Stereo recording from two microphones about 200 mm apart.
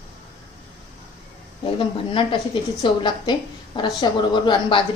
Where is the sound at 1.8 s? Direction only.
25° left (ahead or behind).